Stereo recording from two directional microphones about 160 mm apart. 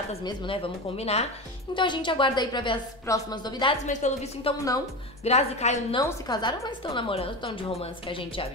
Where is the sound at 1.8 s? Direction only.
30° left (ahead or behind).